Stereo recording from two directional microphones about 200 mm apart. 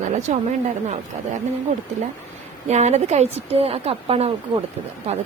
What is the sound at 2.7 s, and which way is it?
A woman's voice, 35° right (ahead or behind).